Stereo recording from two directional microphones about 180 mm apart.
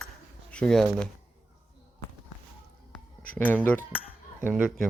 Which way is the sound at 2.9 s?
10° left (ahead or behind).